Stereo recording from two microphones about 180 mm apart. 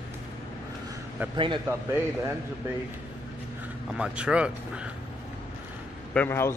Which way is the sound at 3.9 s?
5° right (ahead or behind).